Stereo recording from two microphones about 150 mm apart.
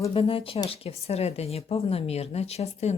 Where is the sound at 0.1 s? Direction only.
40° left (ahead or behind).